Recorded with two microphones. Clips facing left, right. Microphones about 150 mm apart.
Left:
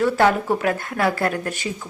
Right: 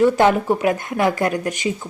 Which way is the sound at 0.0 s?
15° right (ahead or behind).